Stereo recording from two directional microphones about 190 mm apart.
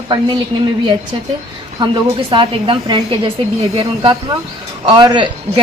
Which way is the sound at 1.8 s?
25° right (ahead or behind).